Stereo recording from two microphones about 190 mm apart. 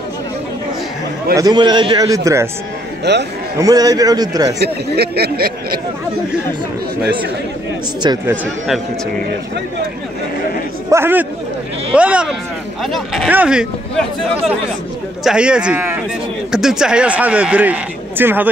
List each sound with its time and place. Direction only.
1.3 s a man's voice: 20° right (ahead or behind)
3.0 s a man's voice: 65° right (ahead or behind)
3.5 s a man's voice: 20° right (ahead or behind)
4.6 s speech: 60° right (ahead or behind)
8.0 s a man's voice: 20° right (ahead or behind)
10.9 s a man's voice: 10° right (ahead or behind)